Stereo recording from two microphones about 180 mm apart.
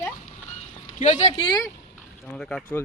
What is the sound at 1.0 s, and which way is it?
Speech, 40° left (ahead or behind).